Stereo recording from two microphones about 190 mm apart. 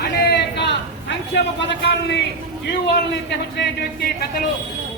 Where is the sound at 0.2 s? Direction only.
60° left (ahead or behind).